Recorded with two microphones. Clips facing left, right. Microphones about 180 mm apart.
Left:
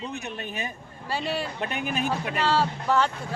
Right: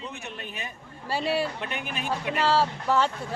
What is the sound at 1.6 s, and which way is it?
Speech, 45° left (ahead or behind).